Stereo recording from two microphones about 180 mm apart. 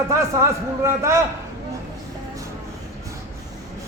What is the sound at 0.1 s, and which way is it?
A man's voice, 15° right (ahead or behind).